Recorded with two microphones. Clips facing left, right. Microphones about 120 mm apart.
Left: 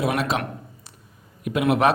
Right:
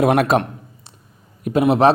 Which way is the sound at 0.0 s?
55° right (ahead or behind).